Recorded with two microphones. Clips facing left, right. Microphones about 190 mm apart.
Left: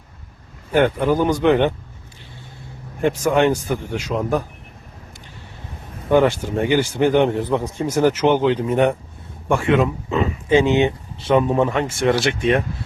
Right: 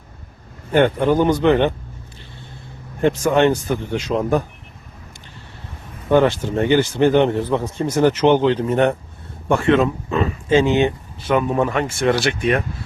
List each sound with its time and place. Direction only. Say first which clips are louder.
0.7 s a man's voice: right 1 dB; 5° left (ahead or behind)
3.0 s a man's voice: right 1 dB; 10° left (ahead or behind)
6.1 s a man's voice: even; 10° left (ahead or behind)